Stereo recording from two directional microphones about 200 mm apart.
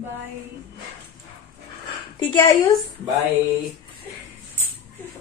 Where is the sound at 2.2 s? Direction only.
20° left (ahead or behind).